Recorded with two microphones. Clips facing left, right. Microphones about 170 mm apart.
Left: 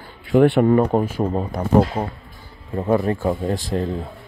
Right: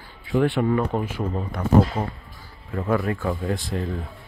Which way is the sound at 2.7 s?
30° left (ahead or behind).